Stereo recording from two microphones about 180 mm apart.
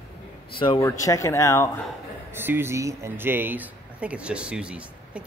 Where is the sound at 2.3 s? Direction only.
10° right (ahead or behind).